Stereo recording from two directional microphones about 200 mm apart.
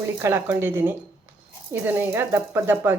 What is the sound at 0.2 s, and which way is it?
Speech, 10° right (ahead or behind).